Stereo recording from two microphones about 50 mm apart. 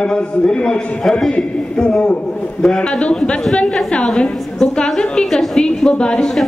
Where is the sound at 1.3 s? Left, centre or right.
Centre.